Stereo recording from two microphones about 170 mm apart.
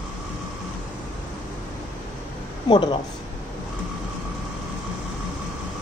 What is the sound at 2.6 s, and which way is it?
Speech, 25° left (ahead or behind).